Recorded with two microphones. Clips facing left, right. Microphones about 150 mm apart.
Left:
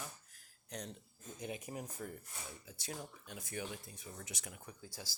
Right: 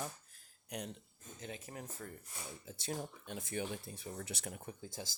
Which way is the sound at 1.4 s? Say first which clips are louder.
Left 3 dB; 15° left (ahead or behind).